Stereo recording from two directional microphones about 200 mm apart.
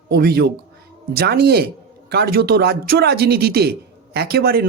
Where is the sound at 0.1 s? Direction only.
50° right (ahead or behind).